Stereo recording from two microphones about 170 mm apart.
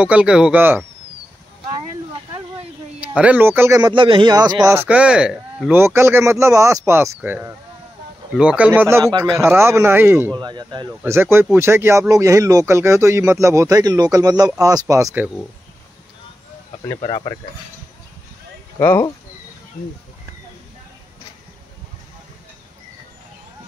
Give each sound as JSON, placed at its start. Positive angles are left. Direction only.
{"t": 0.0, "sound": "speech", "side_deg": -5}
{"t": 3.0, "sound": "speech", "side_deg": -5}
{"t": 5.8, "sound": "speech", "side_deg": -15}
{"t": 10.3, "sound": "speech", "side_deg": -25}
{"t": 11.0, "sound": "speech", "side_deg": -15}
{"t": 17.0, "sound": "speech", "side_deg": 30}
{"t": 18.8, "sound": "speech", "side_deg": 15}